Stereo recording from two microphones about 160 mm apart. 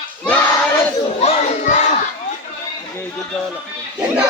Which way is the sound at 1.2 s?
45° left (ahead or behind).